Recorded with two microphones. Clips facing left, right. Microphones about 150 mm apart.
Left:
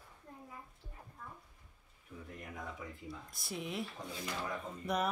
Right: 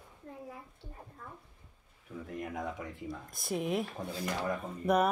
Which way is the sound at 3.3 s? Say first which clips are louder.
Right 8 dB; 50° right (ahead or behind).